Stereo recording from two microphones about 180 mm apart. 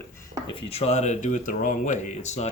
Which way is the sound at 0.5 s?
35° left (ahead or behind).